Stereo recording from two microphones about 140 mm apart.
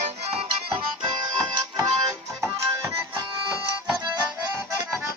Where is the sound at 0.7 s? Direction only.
30° right (ahead or behind).